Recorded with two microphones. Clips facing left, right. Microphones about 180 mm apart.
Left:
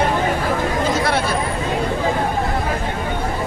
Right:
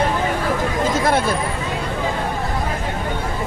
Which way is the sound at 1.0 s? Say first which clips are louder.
Right 2 dB; 45° right (ahead or behind).